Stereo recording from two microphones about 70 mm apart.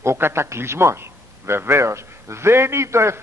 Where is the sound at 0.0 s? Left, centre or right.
Right.